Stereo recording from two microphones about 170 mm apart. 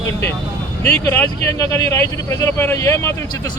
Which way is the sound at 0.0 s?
15° left (ahead or behind).